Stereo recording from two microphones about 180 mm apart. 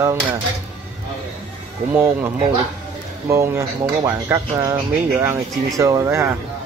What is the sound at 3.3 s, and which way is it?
Speech, 15° right (ahead or behind).